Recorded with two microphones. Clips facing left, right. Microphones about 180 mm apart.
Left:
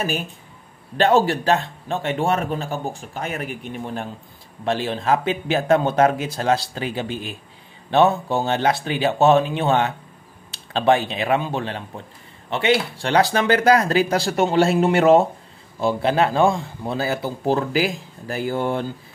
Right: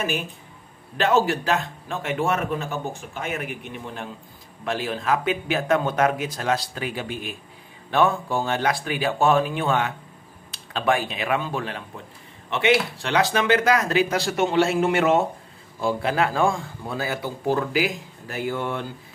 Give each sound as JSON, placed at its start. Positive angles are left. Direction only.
{"t": 0.9, "sound": "speech", "side_deg": 35}